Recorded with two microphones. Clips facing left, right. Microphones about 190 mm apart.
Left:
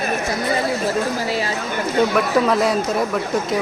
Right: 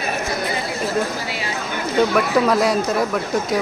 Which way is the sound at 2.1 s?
Centre (ahead or behind).